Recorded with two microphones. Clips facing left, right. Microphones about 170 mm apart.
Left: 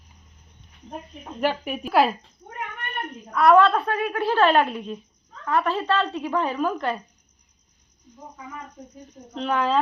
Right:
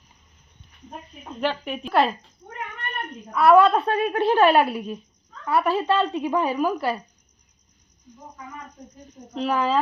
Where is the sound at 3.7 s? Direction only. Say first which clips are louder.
Right 3 dB; 25° right (ahead or behind).